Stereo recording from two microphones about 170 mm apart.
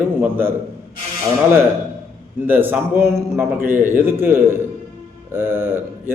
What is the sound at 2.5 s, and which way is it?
A man's voice, 10° right (ahead or behind).